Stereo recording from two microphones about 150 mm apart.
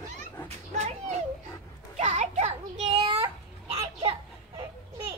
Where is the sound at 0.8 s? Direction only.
50° right (ahead or behind).